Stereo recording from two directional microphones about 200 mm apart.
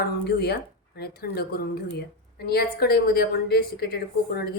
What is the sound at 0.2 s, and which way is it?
Speech, 55° left (ahead or behind).